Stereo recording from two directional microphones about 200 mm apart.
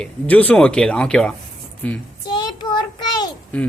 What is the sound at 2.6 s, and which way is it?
Child singing, 20° left (ahead or behind).